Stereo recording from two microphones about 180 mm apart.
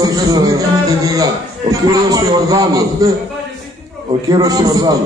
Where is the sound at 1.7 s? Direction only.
20° right (ahead or behind).